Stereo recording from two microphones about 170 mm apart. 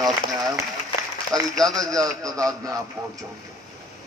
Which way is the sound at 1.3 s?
Centre (ahead or behind).